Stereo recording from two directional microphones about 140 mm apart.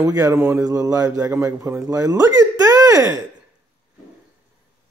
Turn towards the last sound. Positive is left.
turn(degrees=-25)  # may be behind; listen again after turning